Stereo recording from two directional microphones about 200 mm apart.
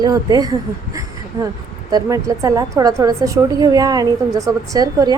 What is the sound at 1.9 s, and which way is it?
A woman's voice, 15° right (ahead or behind).